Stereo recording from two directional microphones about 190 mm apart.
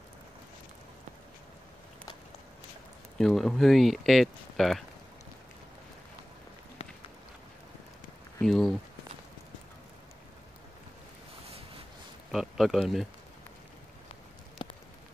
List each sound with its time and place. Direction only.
3.2 s speech: centre (ahead or behind)
8.4 s speech: centre (ahead or behind)
12.3 s speech: centre (ahead or behind)
14.6 s rain on surface: 25° left (ahead or behind)